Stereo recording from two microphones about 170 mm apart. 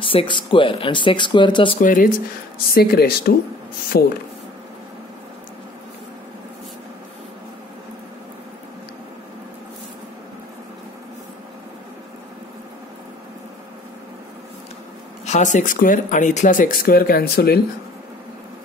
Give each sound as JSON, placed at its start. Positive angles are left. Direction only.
{"t": 0.0, "sound": "speech", "side_deg": 30}
{"t": 1.8, "sound": "speech", "side_deg": 55}
{"t": 2.7, "sound": "speech", "side_deg": 65}
{"t": 15.2, "sound": "speech", "side_deg": 45}